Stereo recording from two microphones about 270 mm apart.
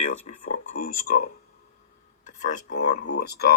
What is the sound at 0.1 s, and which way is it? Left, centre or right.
Speech, left.